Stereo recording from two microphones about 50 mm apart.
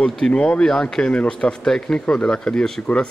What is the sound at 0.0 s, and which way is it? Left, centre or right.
Speech, left.